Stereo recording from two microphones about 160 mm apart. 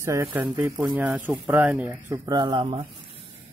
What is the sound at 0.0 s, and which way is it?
Speech, 15° right (ahead or behind).